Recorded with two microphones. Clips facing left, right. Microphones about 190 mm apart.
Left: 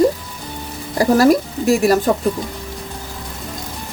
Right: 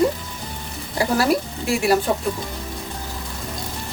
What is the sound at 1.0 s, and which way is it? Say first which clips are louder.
Speech: left 7 dB; 40° left (ahead or behind).